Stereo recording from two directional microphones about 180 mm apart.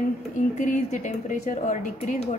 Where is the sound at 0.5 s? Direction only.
45° left (ahead or behind).